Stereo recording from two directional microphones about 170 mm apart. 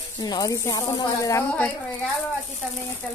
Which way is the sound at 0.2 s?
20° left (ahead or behind).